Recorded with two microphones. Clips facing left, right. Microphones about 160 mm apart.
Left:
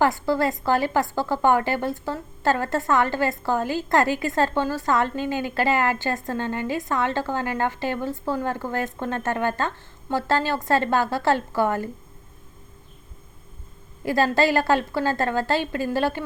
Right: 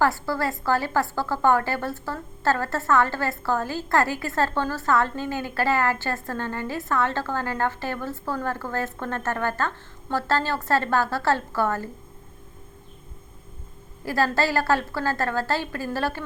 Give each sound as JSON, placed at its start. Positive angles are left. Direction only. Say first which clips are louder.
{"t": 0.0, "sound": "a woman's voice", "louder": "left 3 dB", "side_deg": 20}
{"t": 14.0, "sound": "a woman's voice", "louder": "left 3 dB", "side_deg": 20}